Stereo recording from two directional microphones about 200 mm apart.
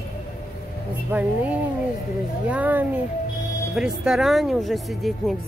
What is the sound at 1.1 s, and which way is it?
Speech, 5° right (ahead or behind).